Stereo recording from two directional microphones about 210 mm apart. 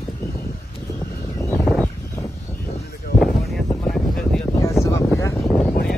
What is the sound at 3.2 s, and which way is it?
Wind noise, centre (ahead or behind).